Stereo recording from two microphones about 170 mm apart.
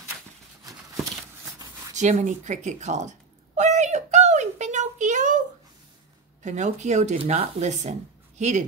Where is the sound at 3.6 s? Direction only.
45° right (ahead or behind).